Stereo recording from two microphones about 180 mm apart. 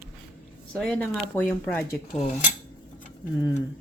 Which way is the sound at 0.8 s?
5° left (ahead or behind).